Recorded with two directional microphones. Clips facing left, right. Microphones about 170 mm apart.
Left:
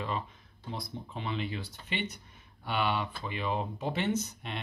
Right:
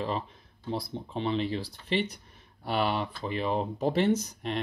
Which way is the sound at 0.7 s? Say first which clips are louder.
Right 6 dB; 30° right (ahead or behind).